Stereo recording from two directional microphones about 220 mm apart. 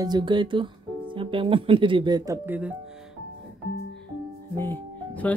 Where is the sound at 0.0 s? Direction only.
20° right (ahead or behind).